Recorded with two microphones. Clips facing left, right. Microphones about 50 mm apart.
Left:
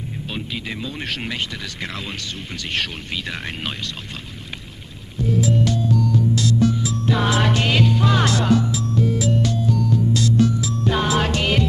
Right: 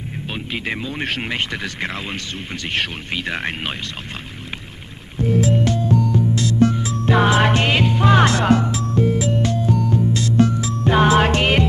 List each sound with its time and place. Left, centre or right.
0.3 s speech: right
5.1 s music: right